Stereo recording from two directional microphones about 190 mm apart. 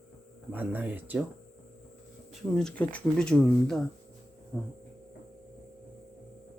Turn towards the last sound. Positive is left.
turn(degrees=5)  # may be behind; listen again after turning